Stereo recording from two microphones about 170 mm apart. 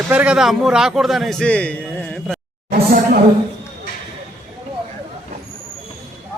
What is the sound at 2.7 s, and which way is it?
Speech, 60° right (ahead or behind).